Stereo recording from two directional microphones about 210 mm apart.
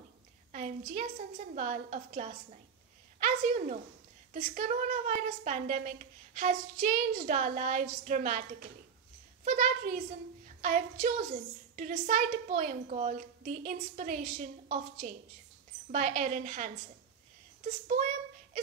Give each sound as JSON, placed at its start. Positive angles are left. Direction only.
{"t": 0.5, "sound": "a woman's voice", "side_deg": -35}